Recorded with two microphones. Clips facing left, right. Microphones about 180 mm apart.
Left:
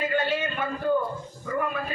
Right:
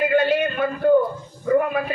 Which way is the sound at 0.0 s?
70° right (ahead or behind).